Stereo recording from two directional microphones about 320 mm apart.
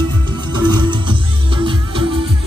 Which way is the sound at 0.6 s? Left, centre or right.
Centre.